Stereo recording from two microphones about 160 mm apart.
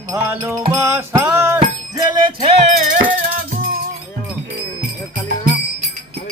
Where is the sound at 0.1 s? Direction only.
15° right (ahead or behind).